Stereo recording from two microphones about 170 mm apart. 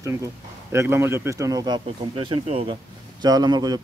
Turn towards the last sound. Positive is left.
turn(degrees=-25)  # may be behind; listen again after turning